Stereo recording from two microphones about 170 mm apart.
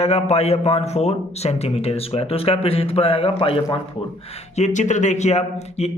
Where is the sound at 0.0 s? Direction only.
35° left (ahead or behind).